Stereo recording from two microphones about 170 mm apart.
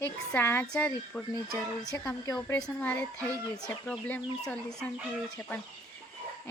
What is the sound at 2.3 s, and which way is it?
Speech, 5° left (ahead or behind).